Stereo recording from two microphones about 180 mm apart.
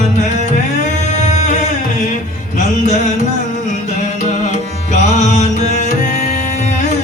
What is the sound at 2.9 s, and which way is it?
Music, 40° left (ahead or behind).